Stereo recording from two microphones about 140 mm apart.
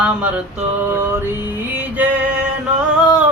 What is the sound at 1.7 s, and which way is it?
Music, 10° right (ahead or behind).